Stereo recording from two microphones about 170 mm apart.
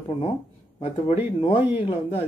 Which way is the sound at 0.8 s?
30° left (ahead or behind).